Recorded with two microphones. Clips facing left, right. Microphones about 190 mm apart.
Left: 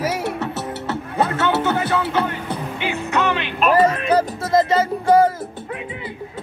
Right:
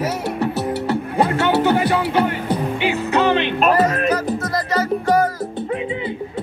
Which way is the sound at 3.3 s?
35° right (ahead or behind).